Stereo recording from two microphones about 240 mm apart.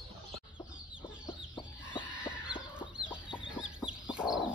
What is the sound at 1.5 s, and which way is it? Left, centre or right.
Chicken, centre.